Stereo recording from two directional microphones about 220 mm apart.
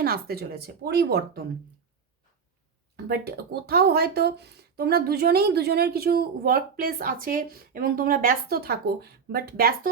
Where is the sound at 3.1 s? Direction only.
45° right (ahead or behind).